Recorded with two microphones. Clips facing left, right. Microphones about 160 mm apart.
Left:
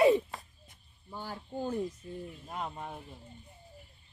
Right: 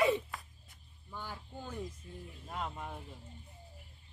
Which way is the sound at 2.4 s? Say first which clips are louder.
Even; 20° left (ahead or behind).